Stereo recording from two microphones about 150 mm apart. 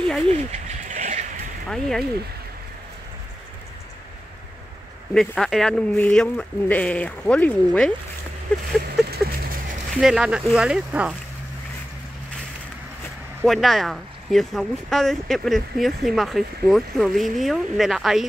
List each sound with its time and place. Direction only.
0.3 s bird: 50° right (ahead or behind)
1.7 s speech: 5° left (ahead or behind)
5.1 s speech: 5° left (ahead or behind)
8.9 s a sound: 85° right
9.9 s speech: 5° right (ahead or behind)
13.5 s speech: centre (ahead or behind)